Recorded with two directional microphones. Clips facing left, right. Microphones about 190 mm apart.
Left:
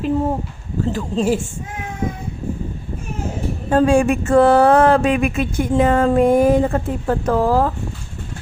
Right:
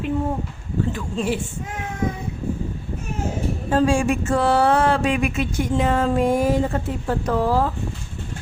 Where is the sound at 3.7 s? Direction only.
55° left (ahead or behind).